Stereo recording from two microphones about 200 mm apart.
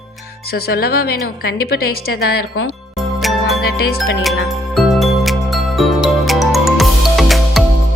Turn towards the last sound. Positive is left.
turn(degrees=0)  # may be behind; listen again after turning